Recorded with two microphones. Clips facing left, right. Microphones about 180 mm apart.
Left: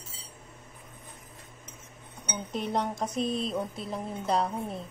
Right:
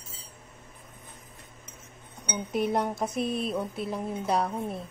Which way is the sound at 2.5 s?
10° right (ahead or behind).